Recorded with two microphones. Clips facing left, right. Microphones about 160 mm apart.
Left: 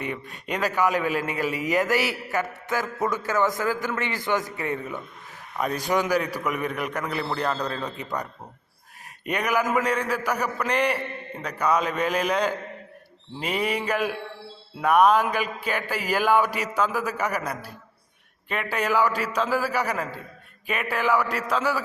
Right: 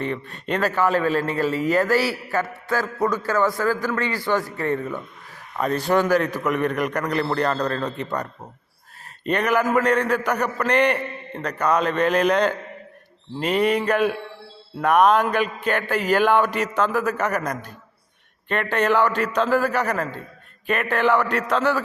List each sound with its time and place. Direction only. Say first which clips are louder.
0.0 s a man's voice: right 5 dB; 10° left (ahead or behind)